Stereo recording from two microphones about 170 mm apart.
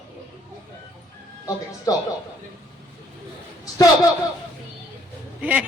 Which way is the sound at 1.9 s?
20° left (ahead or behind).